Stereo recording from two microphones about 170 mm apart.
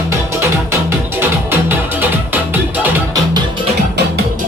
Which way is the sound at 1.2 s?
10° right (ahead or behind).